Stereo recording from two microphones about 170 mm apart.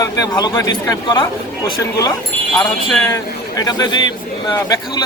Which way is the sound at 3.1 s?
20° left (ahead or behind).